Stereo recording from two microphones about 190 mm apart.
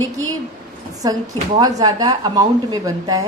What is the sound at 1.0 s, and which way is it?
Speech, 20° right (ahead or behind).